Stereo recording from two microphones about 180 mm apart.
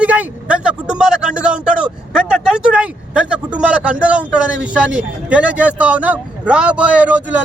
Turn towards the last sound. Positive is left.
turn(degrees=-10)  # may be behind; listen again after turning